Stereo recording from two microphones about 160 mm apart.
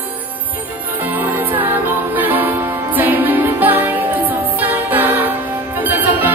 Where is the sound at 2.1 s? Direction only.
10° right (ahead or behind).